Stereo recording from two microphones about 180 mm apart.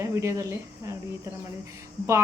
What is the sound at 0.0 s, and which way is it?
Speech, 15° right (ahead or behind).